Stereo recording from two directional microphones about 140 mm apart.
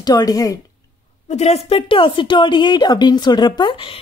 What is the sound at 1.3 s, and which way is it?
A woman's voice, 50° left (ahead or behind).